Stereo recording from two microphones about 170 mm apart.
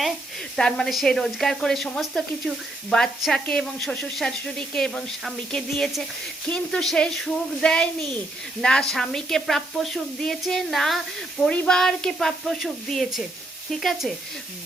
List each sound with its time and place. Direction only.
0.5 s speech: 5° left (ahead or behind)